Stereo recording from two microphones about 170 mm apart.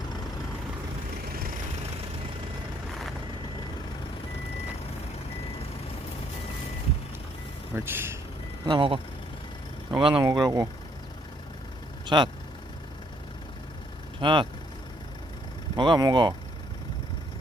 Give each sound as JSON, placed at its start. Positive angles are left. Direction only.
{"t": 1.3, "sound": "vehicle", "side_deg": -60}
{"t": 7.7, "sound": "speech", "side_deg": -15}
{"t": 8.6, "sound": "speech", "side_deg": -30}
{"t": 10.2, "sound": "speech", "side_deg": -25}
{"t": 12.0, "sound": "speech", "side_deg": -25}
{"t": 14.2, "sound": "speech", "side_deg": -30}
{"t": 15.7, "sound": "speech", "side_deg": -25}